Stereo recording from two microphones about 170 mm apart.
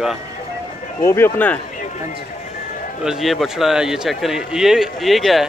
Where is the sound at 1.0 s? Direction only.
15° left (ahead or behind).